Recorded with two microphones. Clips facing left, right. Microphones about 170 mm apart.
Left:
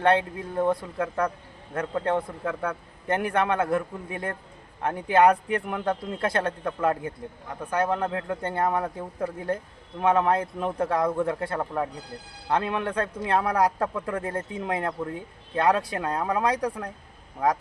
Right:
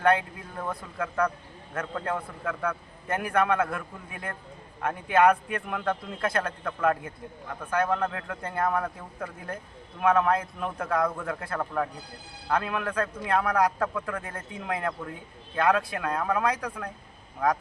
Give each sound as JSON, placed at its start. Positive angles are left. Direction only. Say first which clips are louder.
{"t": 0.0, "sound": "a man's voice", "louder": "left 2 dB", "side_deg": 30}